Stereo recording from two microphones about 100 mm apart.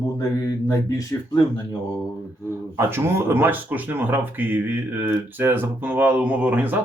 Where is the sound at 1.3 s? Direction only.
50° left (ahead or behind).